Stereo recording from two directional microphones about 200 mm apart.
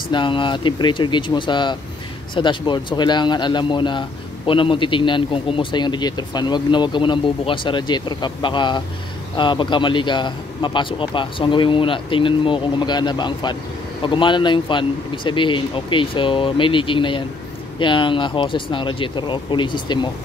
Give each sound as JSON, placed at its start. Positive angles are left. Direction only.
{"t": 0.1, "sound": "a man's voice", "side_deg": 25}